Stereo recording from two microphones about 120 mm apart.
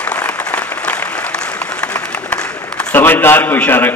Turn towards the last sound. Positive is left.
turn(degrees=15)  # may be behind; listen again after turning